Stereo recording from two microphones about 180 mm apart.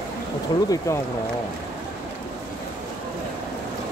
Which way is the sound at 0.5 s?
25° left (ahead or behind).